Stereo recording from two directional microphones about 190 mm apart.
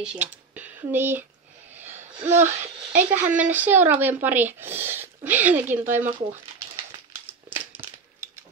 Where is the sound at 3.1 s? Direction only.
10° right (ahead or behind).